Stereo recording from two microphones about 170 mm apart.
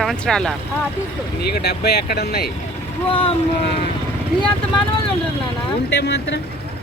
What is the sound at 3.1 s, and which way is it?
Speech, 30° left (ahead or behind).